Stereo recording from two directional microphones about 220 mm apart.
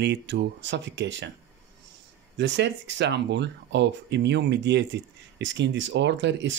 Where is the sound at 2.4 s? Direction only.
55° right (ahead or behind).